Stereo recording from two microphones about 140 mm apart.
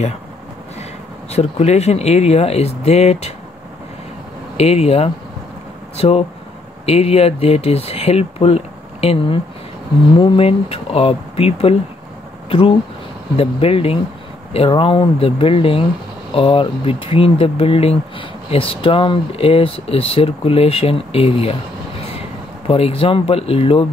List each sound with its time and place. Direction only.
1.3 s speech: 50° left (ahead or behind)
4.6 s speech: 45° left (ahead or behind)
22.7 s speech: 45° left (ahead or behind)